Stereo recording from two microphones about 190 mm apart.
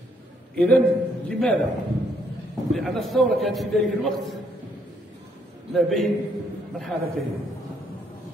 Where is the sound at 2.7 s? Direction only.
Centre (ahead or behind).